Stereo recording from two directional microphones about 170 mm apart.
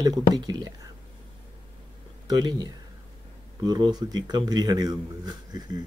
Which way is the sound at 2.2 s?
25° right (ahead or behind).